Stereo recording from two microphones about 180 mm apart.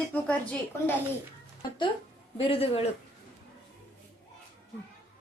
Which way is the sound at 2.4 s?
30° left (ahead or behind).